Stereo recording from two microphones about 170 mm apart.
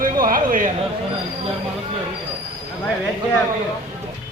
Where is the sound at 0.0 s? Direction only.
55° right (ahead or behind).